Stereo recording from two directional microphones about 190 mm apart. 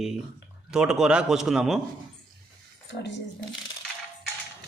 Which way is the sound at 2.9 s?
70° left (ahead or behind).